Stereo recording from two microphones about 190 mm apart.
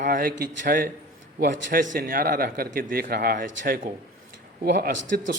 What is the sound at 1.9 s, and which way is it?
Speech, 50° right (ahead or behind).